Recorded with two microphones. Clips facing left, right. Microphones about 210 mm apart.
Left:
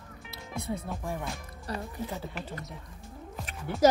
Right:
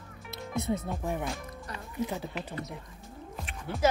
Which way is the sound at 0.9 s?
20° right (ahead or behind).